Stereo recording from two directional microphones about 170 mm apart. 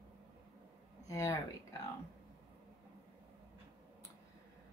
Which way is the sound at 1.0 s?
20° left (ahead or behind).